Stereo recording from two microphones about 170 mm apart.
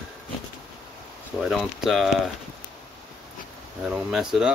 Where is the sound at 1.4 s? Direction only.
Centre (ahead or behind).